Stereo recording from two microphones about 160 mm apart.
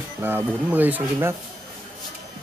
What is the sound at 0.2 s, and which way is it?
Speech, 15° right (ahead or behind).